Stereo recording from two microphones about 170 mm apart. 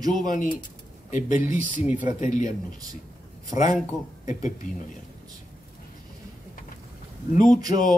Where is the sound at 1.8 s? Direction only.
10° right (ahead or behind).